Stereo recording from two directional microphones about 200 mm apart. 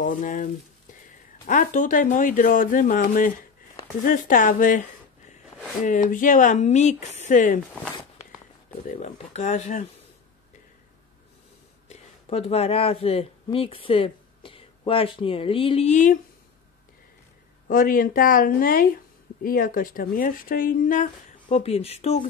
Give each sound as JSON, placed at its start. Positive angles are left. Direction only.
{"t": 0.0, "sound": "speech", "side_deg": 40}
{"t": 5.9, "sound": "speech", "side_deg": 40}
{"t": 8.8, "sound": "speech", "side_deg": 35}
{"t": 11.9, "sound": "speech", "side_deg": 30}
{"t": 17.6, "sound": "speech", "side_deg": 45}